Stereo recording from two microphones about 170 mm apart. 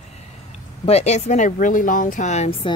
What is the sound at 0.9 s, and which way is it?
A woman's voice, 40° left (ahead or behind).